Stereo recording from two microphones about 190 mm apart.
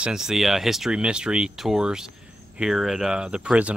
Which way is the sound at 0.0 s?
5° right (ahead or behind).